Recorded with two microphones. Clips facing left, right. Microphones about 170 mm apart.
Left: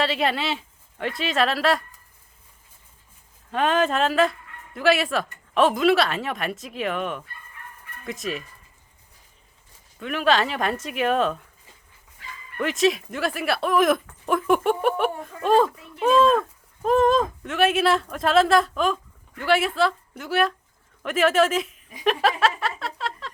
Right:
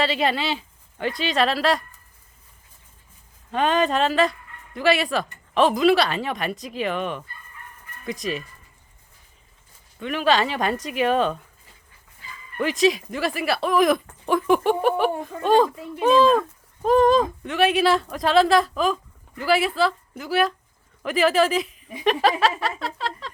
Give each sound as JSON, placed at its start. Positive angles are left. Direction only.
{"t": 0.0, "sound": "speech", "side_deg": 0}
{"t": 3.5, "sound": "speech", "side_deg": 0}
{"t": 10.0, "sound": "speech", "side_deg": 0}
{"t": 12.5, "sound": "speech", "side_deg": 0}
{"t": 15.7, "sound": "a child's voice", "side_deg": -25}
{"t": 16.0, "sound": "a woman's voice", "side_deg": 0}